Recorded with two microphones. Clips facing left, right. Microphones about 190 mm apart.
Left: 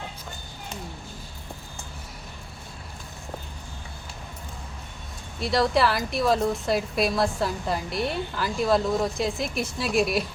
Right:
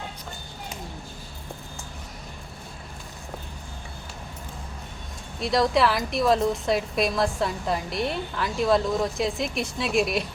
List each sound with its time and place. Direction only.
5.4 s a woman's voice: centre (ahead or behind)